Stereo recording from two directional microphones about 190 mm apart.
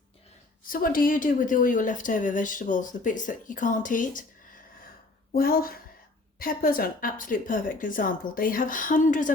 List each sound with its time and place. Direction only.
0.7 s speech: 45° left (ahead or behind)
5.4 s speech: 50° left (ahead or behind)